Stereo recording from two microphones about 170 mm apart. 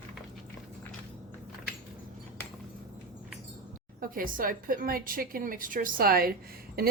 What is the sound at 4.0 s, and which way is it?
A woman's voice, 55° right (ahead or behind).